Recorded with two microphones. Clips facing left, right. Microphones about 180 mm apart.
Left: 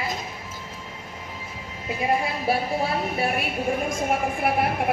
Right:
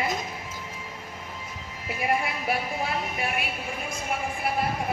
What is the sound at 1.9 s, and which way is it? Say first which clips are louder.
A woman's voice: left 3 dB; 25° left (ahead or behind).